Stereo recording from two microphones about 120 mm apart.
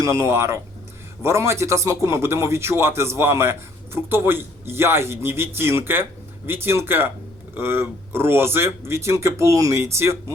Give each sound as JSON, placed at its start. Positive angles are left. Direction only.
{"t": 0.0, "sound": "speech", "side_deg": -25}